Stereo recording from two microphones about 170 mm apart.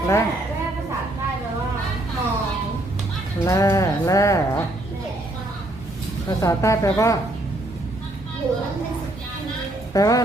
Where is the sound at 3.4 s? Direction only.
15° left (ahead or behind).